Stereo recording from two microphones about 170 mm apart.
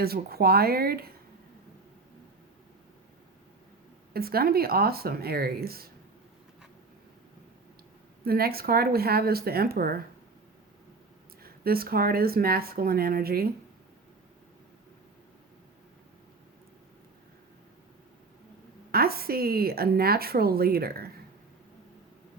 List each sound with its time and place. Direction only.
0.0 s a woman's voice: 65° right (ahead or behind)
4.1 s a woman's voice: 65° right (ahead or behind)
8.2 s a woman's voice: 65° right (ahead or behind)
11.4 s a woman's voice: 60° right (ahead or behind)
18.9 s a woman's voice: 65° right (ahead or behind)